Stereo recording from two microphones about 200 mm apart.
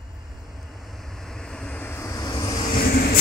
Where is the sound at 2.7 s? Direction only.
50° left (ahead or behind).